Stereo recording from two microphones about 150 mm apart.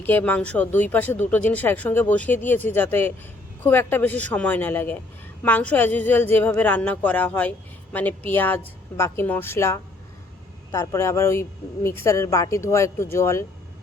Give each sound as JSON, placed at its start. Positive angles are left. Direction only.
{"t": 0.0, "sound": "a woman's voice", "side_deg": 10}